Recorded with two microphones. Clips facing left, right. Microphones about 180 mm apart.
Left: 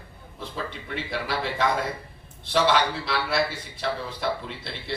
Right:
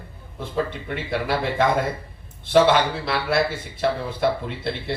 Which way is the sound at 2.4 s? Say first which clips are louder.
Right 5 dB; 55° right (ahead or behind).